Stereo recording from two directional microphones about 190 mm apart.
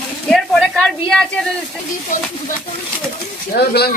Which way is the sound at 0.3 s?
Centre (ahead or behind).